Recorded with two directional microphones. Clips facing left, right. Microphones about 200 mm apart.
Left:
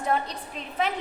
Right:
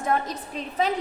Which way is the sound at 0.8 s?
40° right (ahead or behind).